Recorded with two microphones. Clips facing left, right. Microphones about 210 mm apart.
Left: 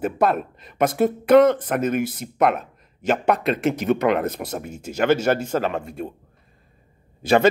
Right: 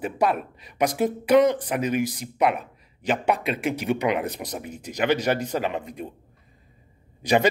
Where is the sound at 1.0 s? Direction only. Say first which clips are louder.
Left 4 dB; 55° left (ahead or behind).